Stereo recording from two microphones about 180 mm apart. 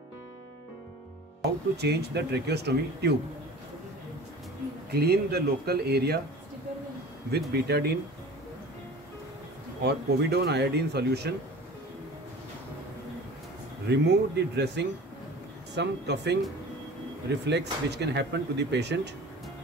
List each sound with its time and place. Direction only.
1.4 s speech: 65° right (ahead or behind)
4.9 s speech: 60° right (ahead or behind)
7.2 s speech: 65° right (ahead or behind)
9.8 s speech: 65° right (ahead or behind)
13.8 s speech: 70° right (ahead or behind)